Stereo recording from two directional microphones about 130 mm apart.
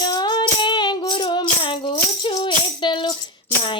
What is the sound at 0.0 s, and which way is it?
Music, 35° left (ahead or behind).